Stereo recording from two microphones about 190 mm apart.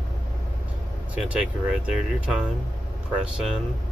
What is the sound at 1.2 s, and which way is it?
Speech, 5° right (ahead or behind).